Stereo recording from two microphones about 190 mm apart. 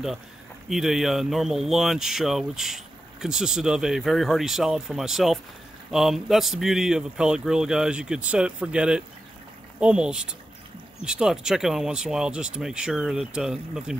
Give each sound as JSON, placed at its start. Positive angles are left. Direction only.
{"t": 0.7, "sound": "speech", "side_deg": 0}